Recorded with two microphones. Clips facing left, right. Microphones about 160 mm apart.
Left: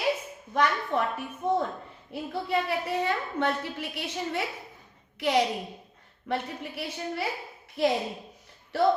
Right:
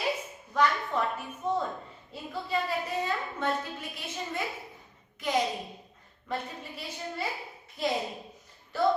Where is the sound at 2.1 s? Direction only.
65° left (ahead or behind).